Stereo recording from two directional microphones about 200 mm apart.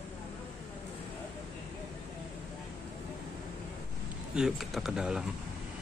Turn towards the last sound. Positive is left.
turn(degrees=0)  # may be behind; listen again after turning